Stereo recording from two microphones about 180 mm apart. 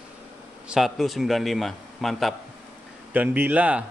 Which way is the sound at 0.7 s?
Centre (ahead or behind).